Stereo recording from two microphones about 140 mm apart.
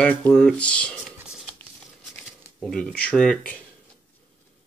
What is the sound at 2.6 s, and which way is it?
Speech, 5° left (ahead or behind).